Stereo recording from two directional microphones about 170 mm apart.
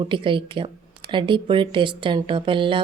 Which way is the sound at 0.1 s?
30° right (ahead or behind).